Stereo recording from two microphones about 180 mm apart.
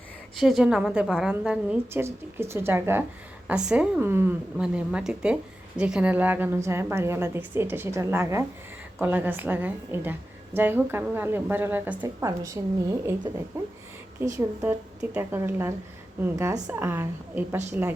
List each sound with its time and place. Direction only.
0.3 s a woman's voice: centre (ahead or behind)